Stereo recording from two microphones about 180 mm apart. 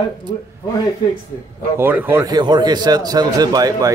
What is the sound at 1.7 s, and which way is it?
A man's voice, 10° right (ahead or behind).